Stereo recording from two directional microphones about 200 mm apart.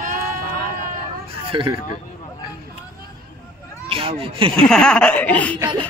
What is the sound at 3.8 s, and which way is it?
Speech, 30° right (ahead or behind).